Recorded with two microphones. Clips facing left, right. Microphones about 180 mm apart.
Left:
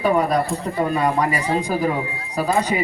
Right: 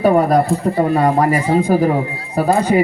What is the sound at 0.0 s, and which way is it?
Speech, 50° right (ahead or behind).